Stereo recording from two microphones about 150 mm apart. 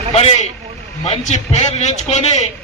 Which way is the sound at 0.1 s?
40° left (ahead or behind).